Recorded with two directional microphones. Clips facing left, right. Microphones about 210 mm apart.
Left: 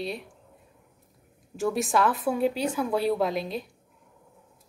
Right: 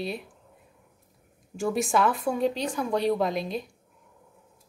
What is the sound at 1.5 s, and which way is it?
A woman's voice, centre (ahead or behind).